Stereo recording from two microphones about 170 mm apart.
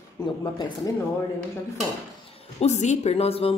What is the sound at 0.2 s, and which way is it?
Speech, 25° left (ahead or behind).